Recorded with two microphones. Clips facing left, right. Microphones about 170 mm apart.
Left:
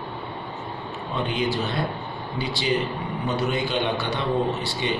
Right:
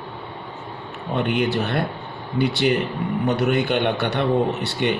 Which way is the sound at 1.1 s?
60° right (ahead or behind).